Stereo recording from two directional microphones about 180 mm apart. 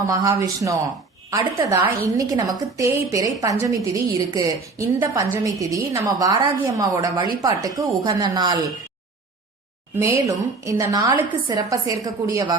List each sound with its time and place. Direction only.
0.1 s a woman's voice: 20° right (ahead or behind)
10.0 s a woman's voice: 15° right (ahead or behind)